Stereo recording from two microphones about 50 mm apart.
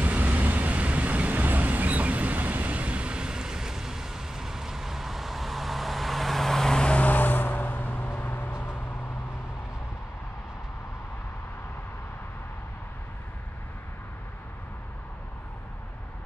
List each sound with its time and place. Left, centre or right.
0.0 s vehicle: right; by 7.1 s centre
7.1 s vehicle: left